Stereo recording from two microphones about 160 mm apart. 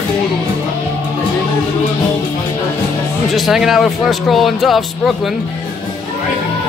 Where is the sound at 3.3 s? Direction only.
Centre (ahead or behind).